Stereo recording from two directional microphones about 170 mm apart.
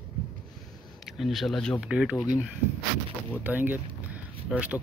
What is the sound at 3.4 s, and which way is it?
Speech, 10° right (ahead or behind).